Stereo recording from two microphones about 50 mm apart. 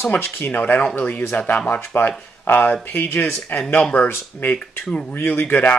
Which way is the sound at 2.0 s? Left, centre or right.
Left.